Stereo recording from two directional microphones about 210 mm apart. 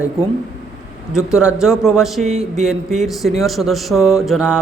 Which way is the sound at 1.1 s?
5° right (ahead or behind).